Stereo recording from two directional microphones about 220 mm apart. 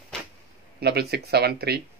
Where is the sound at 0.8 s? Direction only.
45° right (ahead or behind).